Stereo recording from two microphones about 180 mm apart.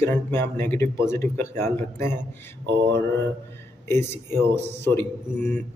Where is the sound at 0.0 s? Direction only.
15° left (ahead or behind).